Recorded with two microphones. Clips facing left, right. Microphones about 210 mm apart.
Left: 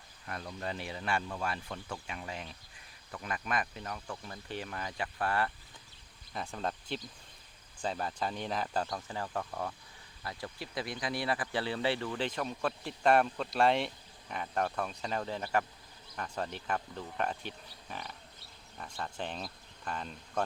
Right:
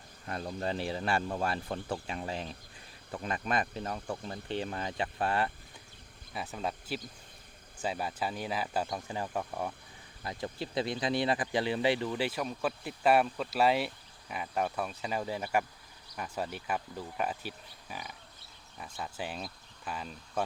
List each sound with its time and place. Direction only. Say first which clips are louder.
0.3 s speech: right 5 dB; 30° right (ahead or behind)
6.3 s speech: right 1 dB; 5° right (ahead or behind)